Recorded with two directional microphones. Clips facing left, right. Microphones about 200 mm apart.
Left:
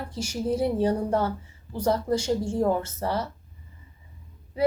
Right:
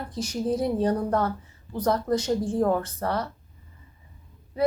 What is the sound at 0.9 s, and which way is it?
Speech, 30° left (ahead or behind).